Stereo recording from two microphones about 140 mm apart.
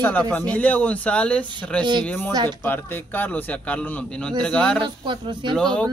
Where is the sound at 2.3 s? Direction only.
30° right (ahead or behind).